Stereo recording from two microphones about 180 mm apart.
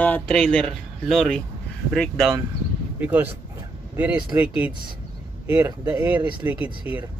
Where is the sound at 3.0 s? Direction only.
10° right (ahead or behind).